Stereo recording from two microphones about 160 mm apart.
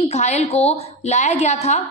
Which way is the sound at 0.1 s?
45° left (ahead or behind).